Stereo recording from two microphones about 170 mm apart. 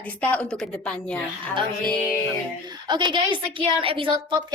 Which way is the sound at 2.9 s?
25° right (ahead or behind).